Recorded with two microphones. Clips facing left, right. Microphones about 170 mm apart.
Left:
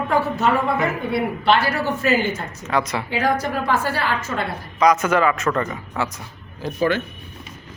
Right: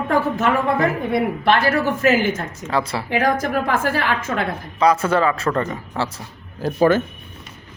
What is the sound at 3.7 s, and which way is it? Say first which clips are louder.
Speech: right 1 dB; 50° right (ahead or behind).